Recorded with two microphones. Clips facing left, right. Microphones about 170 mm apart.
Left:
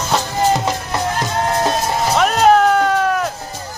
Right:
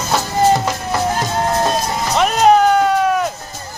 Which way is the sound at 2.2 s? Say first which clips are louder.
Right 1 dB; centre (ahead or behind).